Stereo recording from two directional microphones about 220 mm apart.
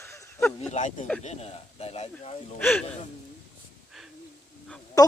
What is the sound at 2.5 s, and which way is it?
Speech, centre (ahead or behind).